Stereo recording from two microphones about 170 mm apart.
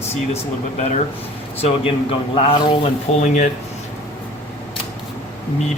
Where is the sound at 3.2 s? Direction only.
45° left (ahead or behind).